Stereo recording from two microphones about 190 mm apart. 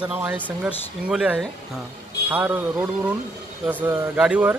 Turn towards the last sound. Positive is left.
turn(degrees=-10)  # may be behind; listen again after turning